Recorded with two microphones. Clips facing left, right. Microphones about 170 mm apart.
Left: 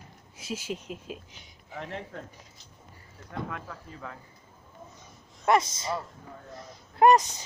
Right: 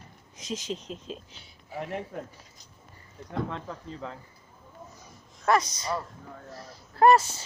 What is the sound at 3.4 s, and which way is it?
Speech, 25° right (ahead or behind).